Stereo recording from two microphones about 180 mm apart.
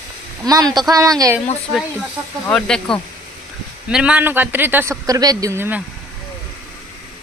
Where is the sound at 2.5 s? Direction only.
5° left (ahead or behind).